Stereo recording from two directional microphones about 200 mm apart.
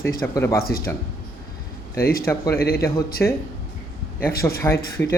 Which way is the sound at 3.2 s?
10° left (ahead or behind).